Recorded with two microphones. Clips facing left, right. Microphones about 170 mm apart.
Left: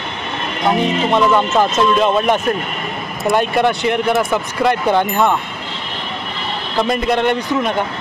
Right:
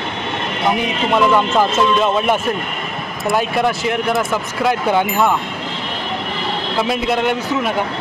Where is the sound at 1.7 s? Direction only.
5° right (ahead or behind).